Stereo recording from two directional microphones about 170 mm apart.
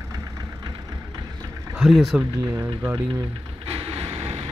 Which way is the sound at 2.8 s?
15° right (ahead or behind).